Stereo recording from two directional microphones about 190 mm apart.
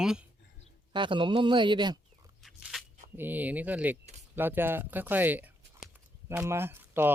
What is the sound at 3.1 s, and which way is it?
Speech, 10° right (ahead or behind).